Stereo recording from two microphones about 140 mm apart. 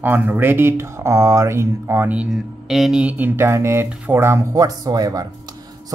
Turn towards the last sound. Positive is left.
turn(degrees=-25)  # may be behind; listen again after turning